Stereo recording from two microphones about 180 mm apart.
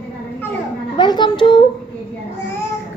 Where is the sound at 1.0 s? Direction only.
25° left (ahead or behind).